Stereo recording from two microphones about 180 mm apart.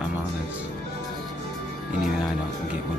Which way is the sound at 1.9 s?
5° right (ahead or behind).